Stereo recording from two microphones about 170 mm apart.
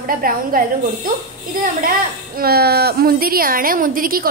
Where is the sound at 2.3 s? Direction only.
65° right (ahead or behind).